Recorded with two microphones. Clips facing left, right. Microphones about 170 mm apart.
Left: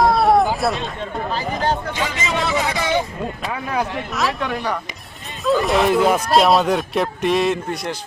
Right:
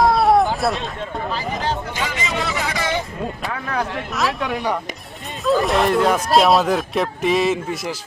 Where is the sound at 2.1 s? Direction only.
20° left (ahead or behind).